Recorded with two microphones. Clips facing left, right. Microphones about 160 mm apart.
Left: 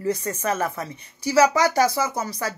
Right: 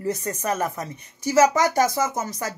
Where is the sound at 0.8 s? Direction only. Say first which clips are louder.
Even; 45° right (ahead or behind).